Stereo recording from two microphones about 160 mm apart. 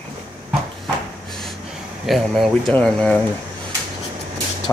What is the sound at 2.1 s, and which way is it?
Speech, centre (ahead or behind).